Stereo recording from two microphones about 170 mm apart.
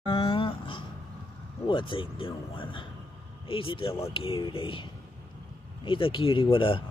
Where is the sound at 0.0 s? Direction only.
30° left (ahead or behind).